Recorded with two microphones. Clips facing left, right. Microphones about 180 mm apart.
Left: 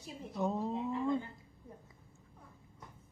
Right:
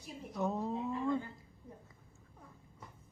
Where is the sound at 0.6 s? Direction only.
20° left (ahead or behind).